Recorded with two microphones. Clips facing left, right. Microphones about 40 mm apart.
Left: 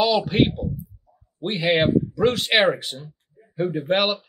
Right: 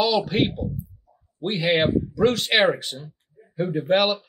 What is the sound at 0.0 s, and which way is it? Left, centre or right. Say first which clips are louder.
Speech: left 2 dB; centre.